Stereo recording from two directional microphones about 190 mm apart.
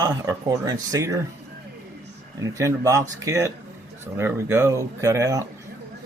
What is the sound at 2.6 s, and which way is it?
Speech, 15° right (ahead or behind).